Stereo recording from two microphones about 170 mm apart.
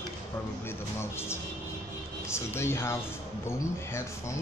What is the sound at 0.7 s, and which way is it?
Speech, 15° left (ahead or behind).